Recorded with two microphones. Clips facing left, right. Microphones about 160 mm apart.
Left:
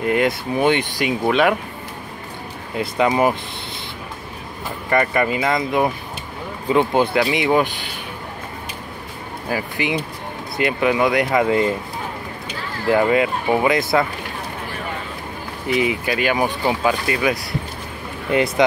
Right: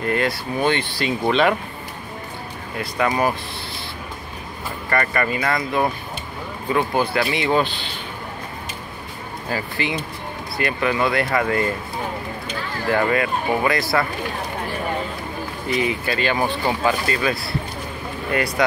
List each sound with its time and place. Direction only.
0.0 s speech: 15° left (ahead or behind)
2.8 s speech: 20° left (ahead or behind)
4.8 s speech: 15° left (ahead or behind)
9.5 s speech: 15° left (ahead or behind)
15.7 s speech: 15° left (ahead or behind)